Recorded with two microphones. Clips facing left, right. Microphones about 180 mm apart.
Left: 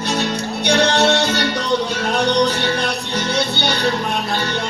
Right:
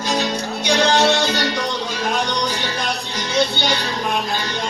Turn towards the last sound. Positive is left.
turn(degrees=60)  # may be behind; listen again after turning